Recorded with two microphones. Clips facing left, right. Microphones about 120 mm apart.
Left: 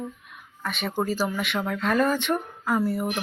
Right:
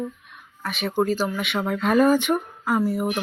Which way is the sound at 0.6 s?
Centre (ahead or behind).